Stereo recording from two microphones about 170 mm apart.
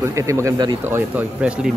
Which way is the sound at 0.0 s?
15° right (ahead or behind).